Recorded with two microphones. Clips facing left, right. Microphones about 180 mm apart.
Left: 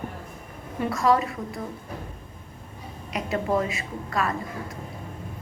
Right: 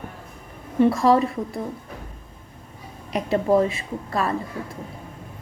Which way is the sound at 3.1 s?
30° right (ahead or behind).